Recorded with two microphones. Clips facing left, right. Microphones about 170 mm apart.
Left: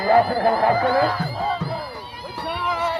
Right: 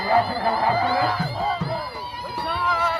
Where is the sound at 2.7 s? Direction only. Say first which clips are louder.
Left 1 dB; 20° left (ahead or behind).